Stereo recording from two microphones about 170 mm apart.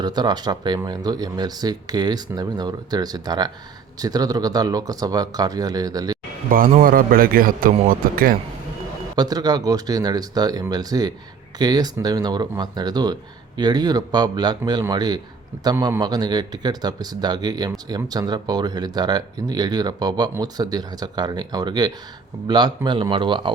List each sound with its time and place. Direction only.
0.0 s speech: 25° right (ahead or behind)
6.5 s a man's voice: 55° right (ahead or behind)
9.1 s speech: 20° right (ahead or behind)